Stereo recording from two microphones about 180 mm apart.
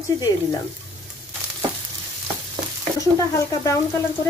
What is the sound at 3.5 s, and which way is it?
Speech, 20° left (ahead or behind).